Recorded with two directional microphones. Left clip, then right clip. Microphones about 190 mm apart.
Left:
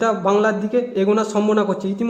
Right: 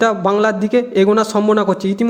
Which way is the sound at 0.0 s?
20° right (ahead or behind).